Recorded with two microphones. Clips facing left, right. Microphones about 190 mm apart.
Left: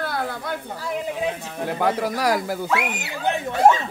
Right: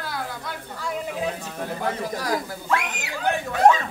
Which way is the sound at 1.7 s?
75° left (ahead or behind).